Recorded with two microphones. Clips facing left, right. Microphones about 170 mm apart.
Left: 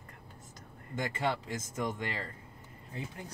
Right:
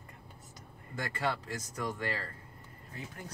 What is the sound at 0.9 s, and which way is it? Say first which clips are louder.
Speech: left 2 dB; 20° left (ahead or behind).